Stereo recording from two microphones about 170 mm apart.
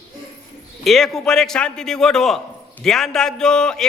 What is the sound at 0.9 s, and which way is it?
A man's voice, centre (ahead or behind).